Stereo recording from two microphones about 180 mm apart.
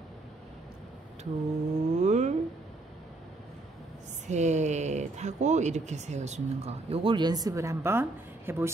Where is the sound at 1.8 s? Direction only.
40° right (ahead or behind).